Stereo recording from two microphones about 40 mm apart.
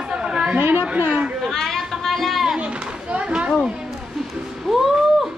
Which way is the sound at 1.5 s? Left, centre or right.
Centre.